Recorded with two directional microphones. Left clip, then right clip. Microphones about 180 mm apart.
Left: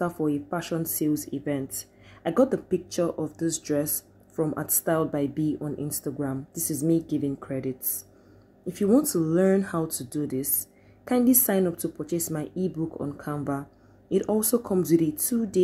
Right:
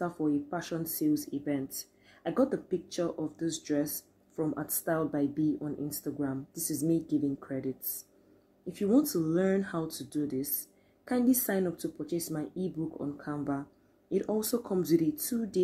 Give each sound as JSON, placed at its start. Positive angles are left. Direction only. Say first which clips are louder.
{"t": 0.0, "sound": "speech", "louder": "left 4 dB", "side_deg": 20}